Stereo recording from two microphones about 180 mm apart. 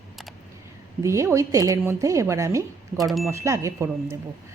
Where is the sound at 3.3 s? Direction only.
15° right (ahead or behind).